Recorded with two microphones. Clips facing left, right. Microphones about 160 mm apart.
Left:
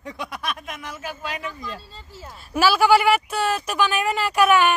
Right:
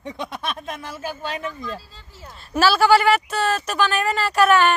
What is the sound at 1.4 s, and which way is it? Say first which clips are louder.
Speech: right 3 dB; centre (ahead or behind).